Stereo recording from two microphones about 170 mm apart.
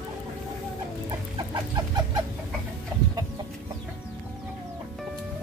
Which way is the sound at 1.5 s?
25° right (ahead or behind).